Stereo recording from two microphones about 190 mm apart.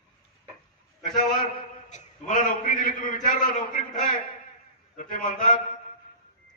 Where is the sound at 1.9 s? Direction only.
40° left (ahead or behind).